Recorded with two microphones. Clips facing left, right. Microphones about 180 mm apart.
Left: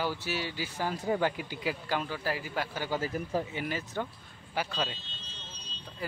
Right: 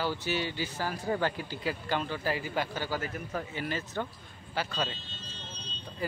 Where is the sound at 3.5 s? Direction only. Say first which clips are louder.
Even; 15° left (ahead or behind).